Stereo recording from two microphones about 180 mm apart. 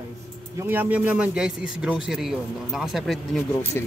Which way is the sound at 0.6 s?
10° right (ahead or behind).